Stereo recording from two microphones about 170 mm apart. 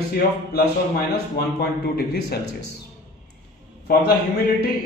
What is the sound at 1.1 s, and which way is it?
A man's voice, 70° left (ahead or behind).